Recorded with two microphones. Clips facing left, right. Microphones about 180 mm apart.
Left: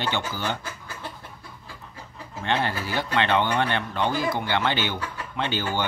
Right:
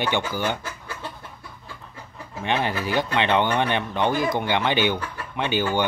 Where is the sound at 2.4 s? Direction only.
15° right (ahead or behind).